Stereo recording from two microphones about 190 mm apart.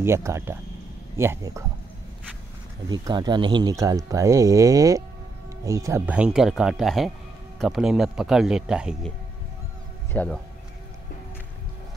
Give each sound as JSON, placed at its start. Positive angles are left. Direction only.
{"t": 0.0, "sound": "speech", "side_deg": -15}
{"t": 2.9, "sound": "a man's voice", "side_deg": -20}
{"t": 10.1, "sound": "speech", "side_deg": 5}